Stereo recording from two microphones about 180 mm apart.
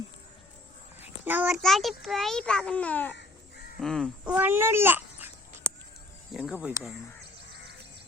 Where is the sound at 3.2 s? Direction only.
55° left (ahead or behind).